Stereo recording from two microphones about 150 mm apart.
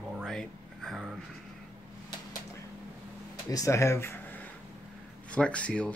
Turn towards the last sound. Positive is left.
turn(degrees=10)  # may be behind; listen again after turning